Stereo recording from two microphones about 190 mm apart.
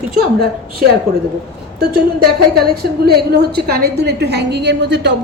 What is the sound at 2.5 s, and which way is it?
A woman's voice, 55° right (ahead or behind).